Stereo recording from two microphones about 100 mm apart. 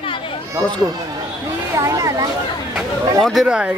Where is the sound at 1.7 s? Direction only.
35° right (ahead or behind).